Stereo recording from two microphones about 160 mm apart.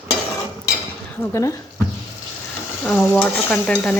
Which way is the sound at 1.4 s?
20° left (ahead or behind).